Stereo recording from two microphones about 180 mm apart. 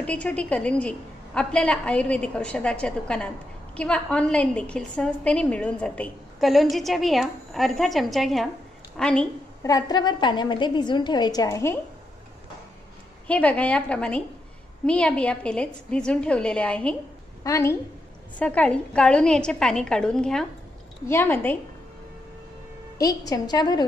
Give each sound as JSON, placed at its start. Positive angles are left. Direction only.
{"t": 0.0, "sound": "a woman's voice", "side_deg": 5}
{"t": 9.6, "sound": "a woman's voice", "side_deg": 20}
{"t": 13.3, "sound": "a woman's voice", "side_deg": 5}
{"t": 17.4, "sound": "a woman's voice", "side_deg": 15}
{"t": 22.9, "sound": "a woman's voice", "side_deg": 20}